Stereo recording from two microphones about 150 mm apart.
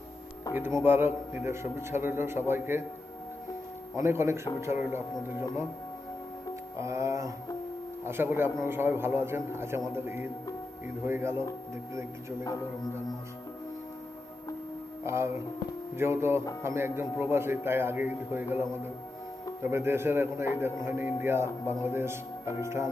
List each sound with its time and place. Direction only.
0.5 s speech: 15° right (ahead or behind)
3.9 s speech: 15° right (ahead or behind)
6.7 s music: 20° right (ahead or behind)
8.0 s speech: 15° right (ahead or behind)
15.0 s speech: 15° right (ahead or behind)